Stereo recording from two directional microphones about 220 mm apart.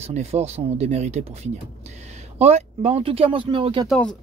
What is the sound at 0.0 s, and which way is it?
Speech, 30° right (ahead or behind).